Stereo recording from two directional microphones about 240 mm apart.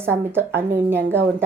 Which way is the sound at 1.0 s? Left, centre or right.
Right.